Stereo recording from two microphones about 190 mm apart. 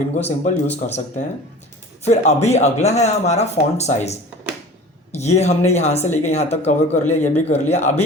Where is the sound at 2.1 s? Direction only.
35° left (ahead or behind).